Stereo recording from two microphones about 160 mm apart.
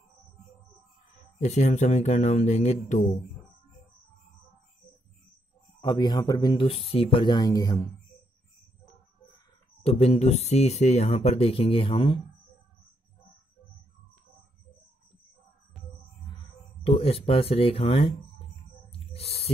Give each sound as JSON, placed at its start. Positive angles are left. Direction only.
{"t": 1.4, "sound": "speech", "side_deg": 45}
{"t": 5.8, "sound": "speech", "side_deg": 25}
{"t": 9.8, "sound": "speech", "side_deg": 40}
{"t": 16.8, "sound": "speech", "side_deg": 40}
{"t": 18.9, "sound": "a sound", "side_deg": 40}